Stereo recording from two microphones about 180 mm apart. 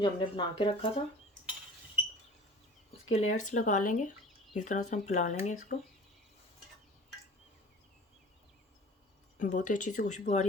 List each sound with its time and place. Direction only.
0.0 s speech: 25° left (ahead or behind)
3.1 s speech: 40° left (ahead or behind)
9.4 s speech: 45° left (ahead or behind)